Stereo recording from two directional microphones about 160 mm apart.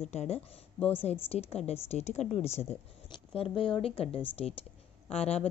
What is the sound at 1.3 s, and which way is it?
A woman's voice, 40° left (ahead or behind).